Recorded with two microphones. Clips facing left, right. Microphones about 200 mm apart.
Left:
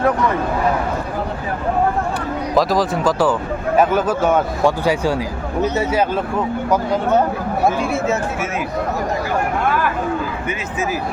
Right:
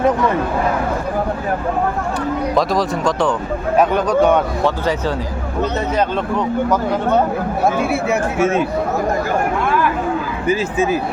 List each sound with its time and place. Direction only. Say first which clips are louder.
2.6 s speech: left 3 dB; centre (ahead or behind)
7.9 s speech: right 1 dB; 10° right (ahead or behind)
10.4 s speech: right 6 dB; 30° right (ahead or behind)